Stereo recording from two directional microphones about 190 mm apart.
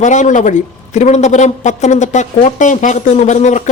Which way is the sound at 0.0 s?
40° left (ahead or behind).